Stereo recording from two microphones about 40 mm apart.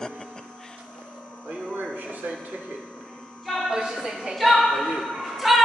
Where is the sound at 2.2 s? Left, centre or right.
Right.